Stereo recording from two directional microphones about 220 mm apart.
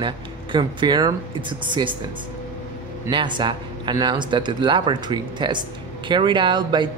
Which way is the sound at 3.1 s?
20° right (ahead or behind).